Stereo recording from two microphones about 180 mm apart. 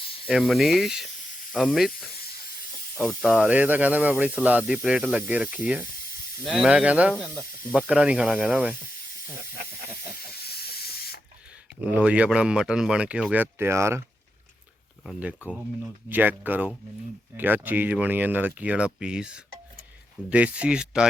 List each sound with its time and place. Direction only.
0.3 s speech: centre (ahead or behind)
3.0 s speech: centre (ahead or behind)
10.3 s spray: 60° left (ahead or behind)
11.9 s speech: 5° right (ahead or behind)
15.0 s speech: 5° right (ahead or behind)